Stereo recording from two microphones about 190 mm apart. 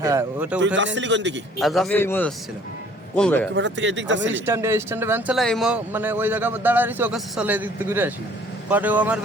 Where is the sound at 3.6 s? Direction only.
70° right (ahead or behind).